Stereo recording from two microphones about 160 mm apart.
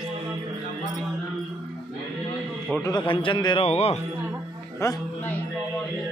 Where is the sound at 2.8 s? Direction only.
30° left (ahead or behind).